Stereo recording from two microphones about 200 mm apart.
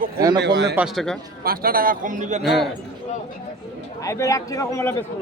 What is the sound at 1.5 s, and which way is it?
Speech, 45° right (ahead or behind).